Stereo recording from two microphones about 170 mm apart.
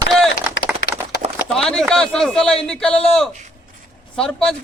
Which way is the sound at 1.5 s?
5° left (ahead or behind).